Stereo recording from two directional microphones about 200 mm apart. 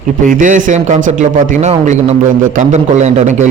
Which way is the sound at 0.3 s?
40° right (ahead or behind).